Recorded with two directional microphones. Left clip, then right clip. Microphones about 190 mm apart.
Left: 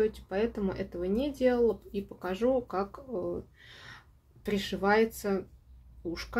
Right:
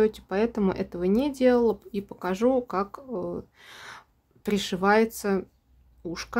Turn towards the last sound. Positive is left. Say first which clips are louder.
# right 3 dB
turn(degrees=-30)  # may be behind; listen again after turning